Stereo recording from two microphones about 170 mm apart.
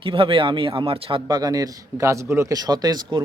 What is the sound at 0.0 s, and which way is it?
A man's voice, 30° right (ahead or behind).